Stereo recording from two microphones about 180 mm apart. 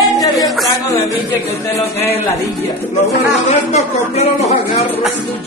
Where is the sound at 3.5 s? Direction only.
40° left (ahead or behind).